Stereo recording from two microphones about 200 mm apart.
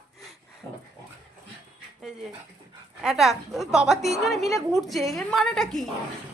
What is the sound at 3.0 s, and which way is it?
A woman's voice, centre (ahead or behind).